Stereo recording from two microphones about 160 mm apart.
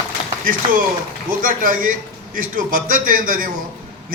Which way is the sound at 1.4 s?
60° right (ahead or behind).